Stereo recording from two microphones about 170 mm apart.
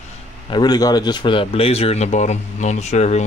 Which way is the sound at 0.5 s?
25° left (ahead or behind).